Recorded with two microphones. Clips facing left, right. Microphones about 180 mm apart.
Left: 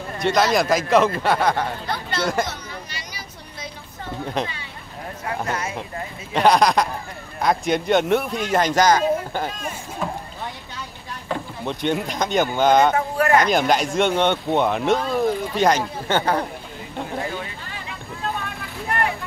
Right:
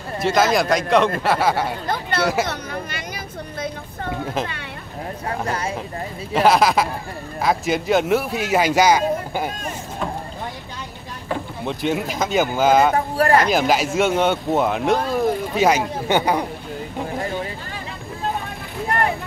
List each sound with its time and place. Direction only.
0.2 s speech: centre (ahead or behind)
1.9 s speech: 60° right (ahead or behind)
2.4 s a sound: 60° right (ahead or behind)
5.5 s vehicle: 30° right (ahead or behind)
6.3 s speech: 5° right (ahead or behind)
11.2 s speech: centre (ahead or behind)
12.9 s speech: 35° right (ahead or behind)
13.4 s speech: 5° right (ahead or behind)